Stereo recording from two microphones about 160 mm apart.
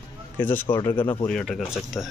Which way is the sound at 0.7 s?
25° left (ahead or behind).